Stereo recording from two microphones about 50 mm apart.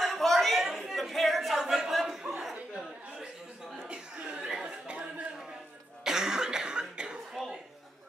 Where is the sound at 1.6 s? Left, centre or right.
Centre.